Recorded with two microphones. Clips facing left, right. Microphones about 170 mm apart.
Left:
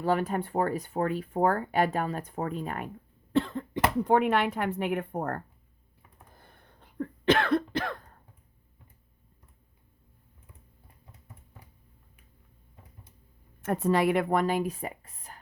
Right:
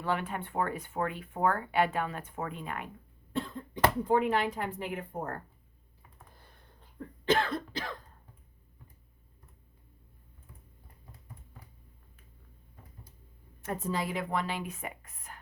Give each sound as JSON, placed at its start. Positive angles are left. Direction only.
{"t": 0.0, "sound": "speech", "side_deg": 40}
{"t": 3.3, "sound": "speech", "side_deg": 80}
{"t": 7.0, "sound": "cough", "side_deg": 70}
{"t": 13.6, "sound": "a woman's voice", "side_deg": 65}